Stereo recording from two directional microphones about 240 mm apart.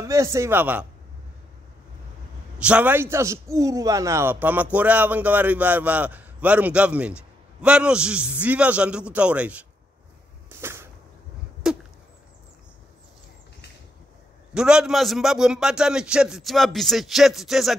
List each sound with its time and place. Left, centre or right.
0.0 s a man's voice: centre
2.6 s a man's voice: centre
10.6 s whip: centre
11.6 s a sound: centre
14.5 s a man's voice: centre